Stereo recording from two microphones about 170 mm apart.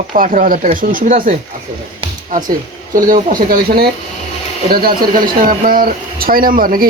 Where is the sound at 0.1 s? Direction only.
55° right (ahead or behind).